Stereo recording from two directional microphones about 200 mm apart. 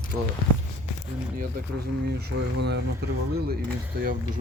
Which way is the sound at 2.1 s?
60° right (ahead or behind).